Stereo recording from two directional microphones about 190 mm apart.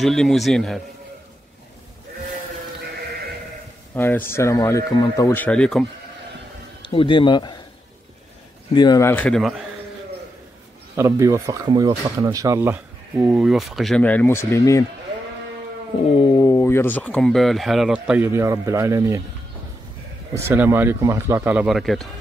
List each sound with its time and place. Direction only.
0.0 s speech: centre (ahead or behind)
3.9 s speech: 10° left (ahead or behind)
6.8 s a man's voice: 25° left (ahead or behind)
8.7 s speech: 20° left (ahead or behind)
11.0 s speech: 15° right (ahead or behind); by 14.9 s 15° left (ahead or behind)
16.2 s speech: 15° left (ahead or behind); by 19.2 s 15° right (ahead or behind)
20.3 s speech: 10° right (ahead or behind)